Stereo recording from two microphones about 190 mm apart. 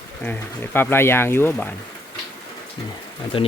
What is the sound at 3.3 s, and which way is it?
Speech, 25° left (ahead or behind).